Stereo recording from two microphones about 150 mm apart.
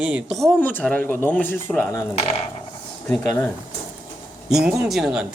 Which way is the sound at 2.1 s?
40° left (ahead or behind).